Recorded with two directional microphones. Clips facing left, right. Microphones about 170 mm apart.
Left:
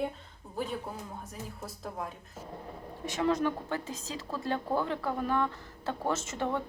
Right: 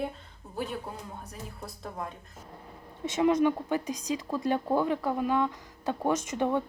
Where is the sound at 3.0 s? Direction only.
20° right (ahead or behind).